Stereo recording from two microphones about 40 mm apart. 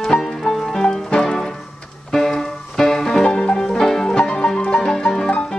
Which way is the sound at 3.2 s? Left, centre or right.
Left.